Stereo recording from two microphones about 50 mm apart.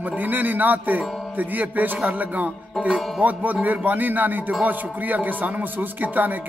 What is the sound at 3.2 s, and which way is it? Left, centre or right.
A man's voice, right.